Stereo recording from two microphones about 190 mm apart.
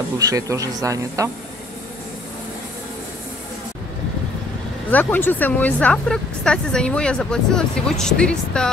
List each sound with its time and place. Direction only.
0.3 s speech: 20° right (ahead or behind)
4.9 s speech: 10° left (ahead or behind)